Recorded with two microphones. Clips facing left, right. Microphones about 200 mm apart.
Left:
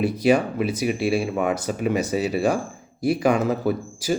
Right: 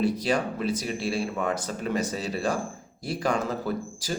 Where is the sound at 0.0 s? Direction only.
10° left (ahead or behind).